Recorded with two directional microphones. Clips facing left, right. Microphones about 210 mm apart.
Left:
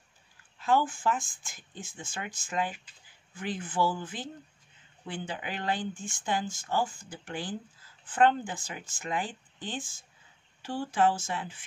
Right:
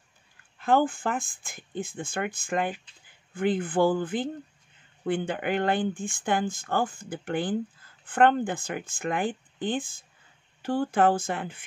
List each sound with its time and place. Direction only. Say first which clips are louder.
0.6 s speech: right 4 dB; 55° right (ahead or behind)